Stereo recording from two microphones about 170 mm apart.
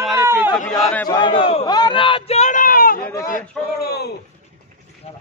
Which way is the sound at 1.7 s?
25° left (ahead or behind).